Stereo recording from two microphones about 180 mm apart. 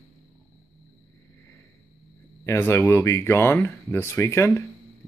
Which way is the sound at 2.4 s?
15° left (ahead or behind).